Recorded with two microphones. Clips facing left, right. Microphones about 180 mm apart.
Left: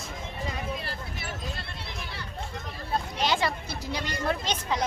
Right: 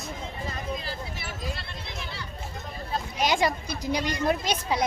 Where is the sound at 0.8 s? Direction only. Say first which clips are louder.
Right 1 dB; 60° left (ahead or behind).